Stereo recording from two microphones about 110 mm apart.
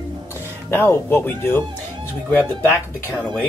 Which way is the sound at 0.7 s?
20° left (ahead or behind).